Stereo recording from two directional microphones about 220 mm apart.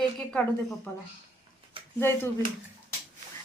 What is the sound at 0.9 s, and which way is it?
Speech, 10° left (ahead or behind).